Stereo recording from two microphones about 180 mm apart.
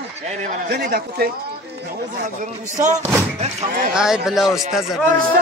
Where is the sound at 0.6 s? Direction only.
60° right (ahead or behind).